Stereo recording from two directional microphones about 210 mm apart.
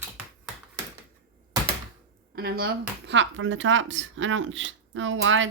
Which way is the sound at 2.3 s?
50° right (ahead or behind).